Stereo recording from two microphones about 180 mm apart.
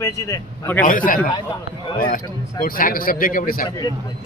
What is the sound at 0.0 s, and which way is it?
Speech, 20° left (ahead or behind).